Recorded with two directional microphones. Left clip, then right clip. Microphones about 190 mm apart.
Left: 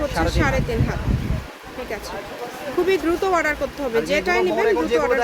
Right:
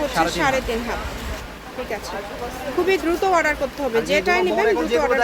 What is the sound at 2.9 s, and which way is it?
Speech, centre (ahead or behind).